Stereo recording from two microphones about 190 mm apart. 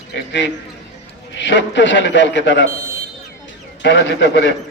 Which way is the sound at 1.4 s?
70° left (ahead or behind).